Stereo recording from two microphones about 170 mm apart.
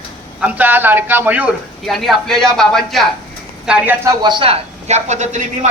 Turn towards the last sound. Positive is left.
turn(degrees=-45)  # may be behind; listen again after turning